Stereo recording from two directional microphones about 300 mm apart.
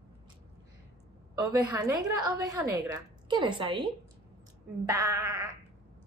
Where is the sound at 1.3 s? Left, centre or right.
Right.